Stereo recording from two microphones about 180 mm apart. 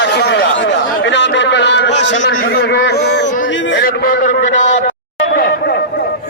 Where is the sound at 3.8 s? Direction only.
55° left (ahead or behind).